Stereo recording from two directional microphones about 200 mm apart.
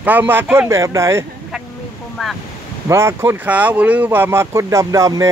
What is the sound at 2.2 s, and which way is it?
Speech, centre (ahead or behind).